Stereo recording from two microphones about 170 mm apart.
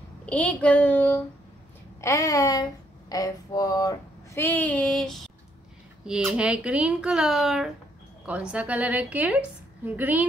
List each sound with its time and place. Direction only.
0.3 s a woman's voice: 10° left (ahead or behind); by 10.2 s 10° right (ahead or behind)